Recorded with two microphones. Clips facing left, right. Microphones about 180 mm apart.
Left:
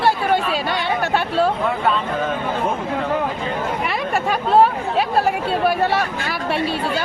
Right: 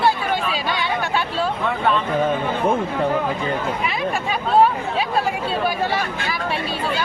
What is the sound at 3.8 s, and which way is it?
Speech, 65° left (ahead or behind).